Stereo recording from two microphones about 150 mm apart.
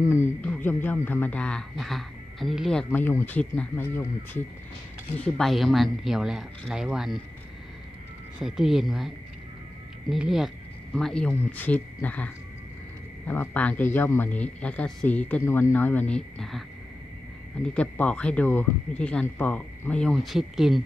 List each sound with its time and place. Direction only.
0.0 s speech: 15° left (ahead or behind)
5.2 s speech: centre (ahead or behind)
8.4 s speech: centre (ahead or behind)
13.3 s speech: 10° left (ahead or behind)
17.7 s speech: 10° left (ahead or behind)